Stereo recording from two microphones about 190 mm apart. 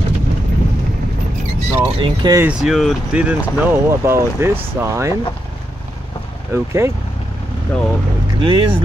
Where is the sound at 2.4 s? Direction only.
Centre (ahead or behind).